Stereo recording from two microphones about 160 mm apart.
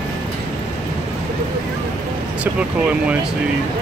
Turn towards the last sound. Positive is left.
turn(degrees=-10)  # may be behind; listen again after turning